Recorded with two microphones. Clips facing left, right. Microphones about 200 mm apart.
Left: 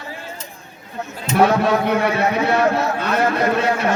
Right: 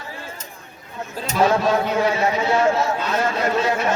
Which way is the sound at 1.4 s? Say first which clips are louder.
Left 2 dB; 60° left (ahead or behind).